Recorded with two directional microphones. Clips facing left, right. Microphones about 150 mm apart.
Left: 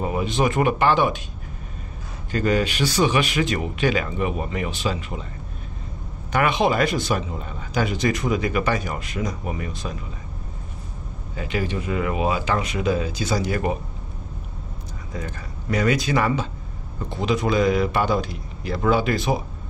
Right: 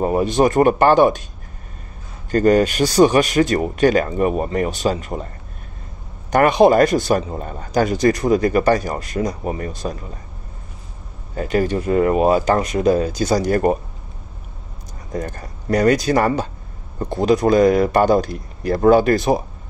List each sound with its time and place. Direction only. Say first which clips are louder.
0.0 s speech: right 6 dB; 40° right (ahead or behind)
2.3 s speech: right 7 dB; 45° right (ahead or behind)
6.3 s speech: right 8 dB; 40° right (ahead or behind)
11.3 s speech: right 7 dB; 45° right (ahead or behind)
15.1 s speech: right 7 dB; 45° right (ahead or behind)